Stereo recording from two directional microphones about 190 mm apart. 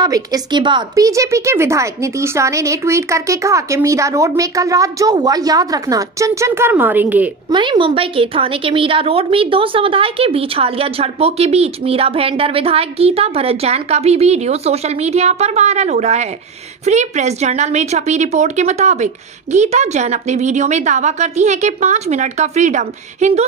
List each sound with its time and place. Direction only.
0.0 s speech: 20° right (ahead or behind)
7.5 s a woman's voice: 25° right (ahead or behind)